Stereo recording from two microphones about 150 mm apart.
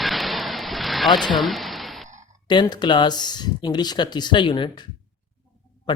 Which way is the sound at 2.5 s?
30° left (ahead or behind).